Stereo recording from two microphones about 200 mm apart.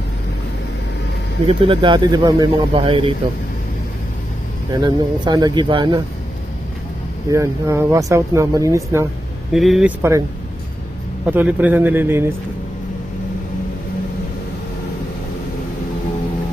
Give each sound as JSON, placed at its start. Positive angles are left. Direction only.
{"t": 1.5, "sound": "speech", "side_deg": -25}
{"t": 4.7, "sound": "speech", "side_deg": -20}
{"t": 7.2, "sound": "speech", "side_deg": -15}
{"t": 9.5, "sound": "speech", "side_deg": 0}
{"t": 11.2, "sound": "speech", "side_deg": -10}